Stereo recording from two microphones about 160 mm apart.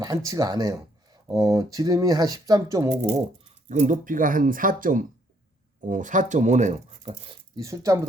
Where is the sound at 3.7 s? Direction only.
50° right (ahead or behind).